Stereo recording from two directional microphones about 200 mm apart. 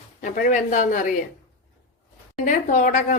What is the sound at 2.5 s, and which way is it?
Speech, 40° left (ahead or behind).